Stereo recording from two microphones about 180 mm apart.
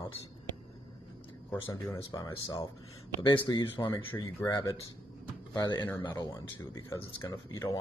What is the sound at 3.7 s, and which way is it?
Speech, 25° left (ahead or behind).